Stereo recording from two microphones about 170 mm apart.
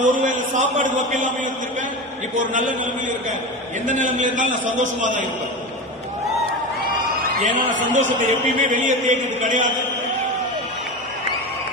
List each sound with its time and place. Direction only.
0.0 s a man's voice: 50° right (ahead or behind)
2.5 s a man's voice: 50° right (ahead or behind)
7.4 s a man's voice: 50° right (ahead or behind)